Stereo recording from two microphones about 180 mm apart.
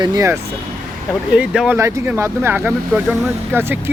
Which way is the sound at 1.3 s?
5° right (ahead or behind).